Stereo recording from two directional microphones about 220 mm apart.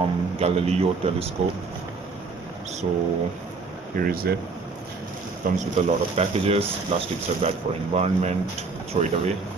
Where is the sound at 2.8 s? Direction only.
30° right (ahead or behind).